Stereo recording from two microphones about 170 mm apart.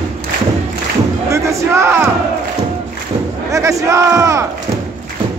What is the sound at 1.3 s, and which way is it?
Speech, 15° right (ahead or behind).